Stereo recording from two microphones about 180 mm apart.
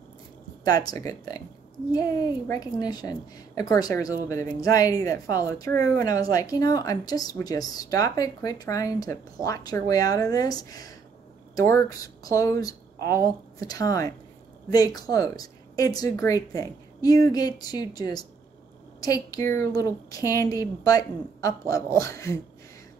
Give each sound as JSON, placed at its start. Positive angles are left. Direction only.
{"t": 0.7, "sound": "a woman's voice", "side_deg": 20}